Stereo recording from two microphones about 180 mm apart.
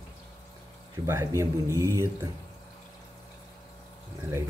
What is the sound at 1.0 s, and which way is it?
A man's voice, 15° right (ahead or behind).